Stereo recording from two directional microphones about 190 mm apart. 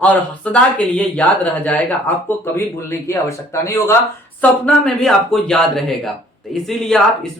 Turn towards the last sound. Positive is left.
turn(degrees=0)  # may be behind; listen again after turning